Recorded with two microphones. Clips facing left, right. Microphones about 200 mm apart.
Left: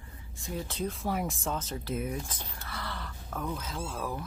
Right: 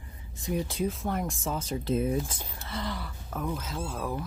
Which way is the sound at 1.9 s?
30° right (ahead or behind).